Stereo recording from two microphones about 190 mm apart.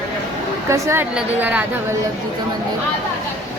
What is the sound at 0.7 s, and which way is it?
Speech, 15° right (ahead or behind).